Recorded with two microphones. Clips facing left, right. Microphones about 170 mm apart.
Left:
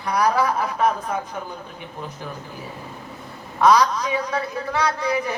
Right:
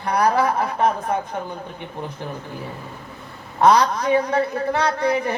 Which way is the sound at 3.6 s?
55° right (ahead or behind).